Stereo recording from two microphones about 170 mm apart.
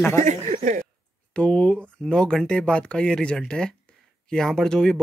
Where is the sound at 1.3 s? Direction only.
5° left (ahead or behind).